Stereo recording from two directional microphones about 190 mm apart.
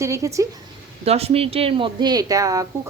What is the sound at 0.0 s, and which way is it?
Speech, 15° right (ahead or behind).